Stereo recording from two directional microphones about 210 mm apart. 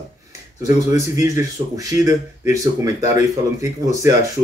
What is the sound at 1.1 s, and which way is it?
Speech, 15° right (ahead or behind).